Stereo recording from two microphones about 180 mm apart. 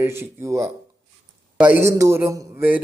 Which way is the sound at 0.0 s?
15° right (ahead or behind).